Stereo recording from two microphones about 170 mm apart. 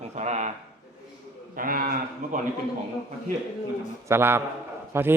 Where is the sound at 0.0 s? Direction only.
40° right (ahead or behind).